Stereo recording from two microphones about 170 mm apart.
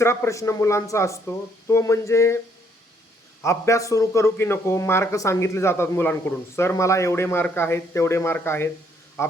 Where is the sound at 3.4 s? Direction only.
15° left (ahead or behind).